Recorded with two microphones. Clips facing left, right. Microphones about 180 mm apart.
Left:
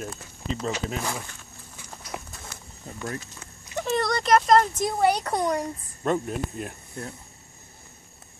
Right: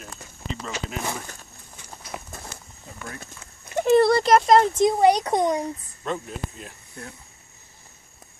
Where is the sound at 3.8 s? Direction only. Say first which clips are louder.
Right 9 dB; 30° right (ahead or behind).